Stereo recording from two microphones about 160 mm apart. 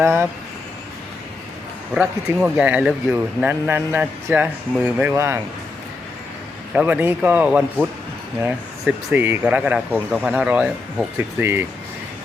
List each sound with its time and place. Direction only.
0.0 s speech: 15° right (ahead or behind)
2.0 s speech: 10° right (ahead or behind)
6.7 s speech: 10° right (ahead or behind)